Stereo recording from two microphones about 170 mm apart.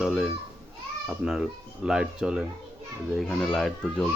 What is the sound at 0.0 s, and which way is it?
A child's voice, centre (ahead or behind).